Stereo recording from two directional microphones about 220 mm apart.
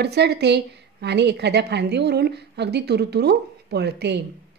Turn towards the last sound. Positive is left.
turn(degrees=-50)  # may be behind; listen again after turning